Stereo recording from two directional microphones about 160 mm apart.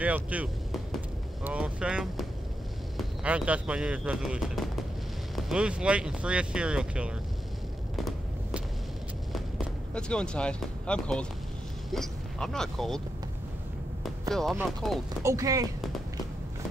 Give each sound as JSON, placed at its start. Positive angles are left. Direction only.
{"t": 0.0, "sound": "speech", "side_deg": -10}
{"t": 7.9, "sound": "a sound", "side_deg": 0}
{"t": 9.9, "sound": "speech", "side_deg": 5}
{"t": 14.3, "sound": "speech", "side_deg": 0}
{"t": 15.2, "sound": "speech", "side_deg": -20}